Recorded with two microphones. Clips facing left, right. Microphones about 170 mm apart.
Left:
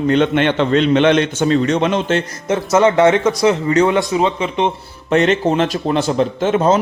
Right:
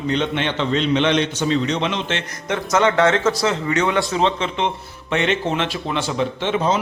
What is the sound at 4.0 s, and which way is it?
Speech, 15° left (ahead or behind).